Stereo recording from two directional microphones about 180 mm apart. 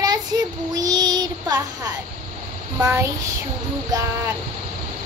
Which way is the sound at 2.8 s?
15° right (ahead or behind).